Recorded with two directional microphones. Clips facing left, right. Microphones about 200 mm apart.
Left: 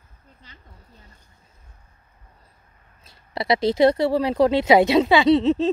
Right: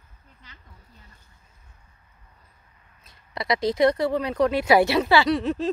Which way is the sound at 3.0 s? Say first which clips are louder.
Left 4 dB; 30° left (ahead or behind).